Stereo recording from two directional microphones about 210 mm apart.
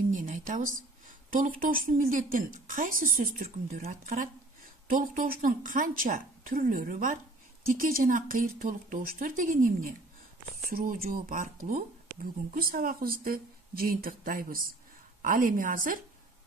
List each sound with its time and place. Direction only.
0.1 s a woman's voice: 40° right (ahead or behind)